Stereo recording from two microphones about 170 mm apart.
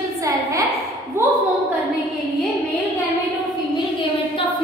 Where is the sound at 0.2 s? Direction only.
20° right (ahead or behind).